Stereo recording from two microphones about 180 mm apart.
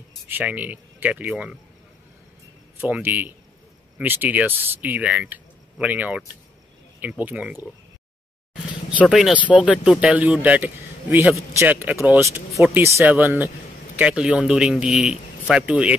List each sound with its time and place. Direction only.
0.3 s speech: 10° right (ahead or behind)
2.8 s speech: 10° right (ahead or behind)
8.9 s a man's voice: centre (ahead or behind)